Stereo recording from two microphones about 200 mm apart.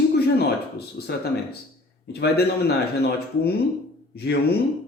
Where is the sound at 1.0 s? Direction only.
50° left (ahead or behind).